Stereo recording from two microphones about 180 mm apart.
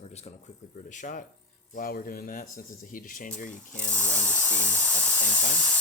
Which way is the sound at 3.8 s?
10° left (ahead or behind).